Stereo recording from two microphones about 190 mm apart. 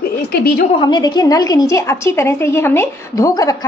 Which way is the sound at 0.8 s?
25° left (ahead or behind).